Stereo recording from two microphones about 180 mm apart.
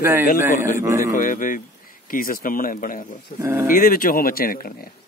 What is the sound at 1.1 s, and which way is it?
Speech, 50° left (ahead or behind).